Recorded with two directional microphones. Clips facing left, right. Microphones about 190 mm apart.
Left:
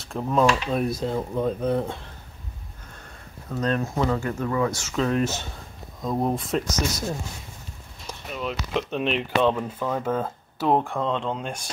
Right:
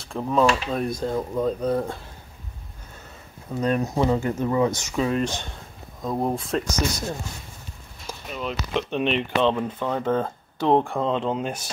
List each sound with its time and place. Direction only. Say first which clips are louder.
0.0 s speech: right 1 dB; centre (ahead or behind)
3.4 s speech: right 2 dB; 10° right (ahead or behind)
5.1 s speech: left 1 dB; 5° left (ahead or behind)
8.1 s speech: even; centre (ahead or behind)